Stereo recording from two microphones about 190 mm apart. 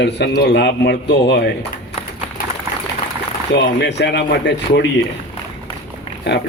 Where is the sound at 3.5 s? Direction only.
65° left (ahead or behind).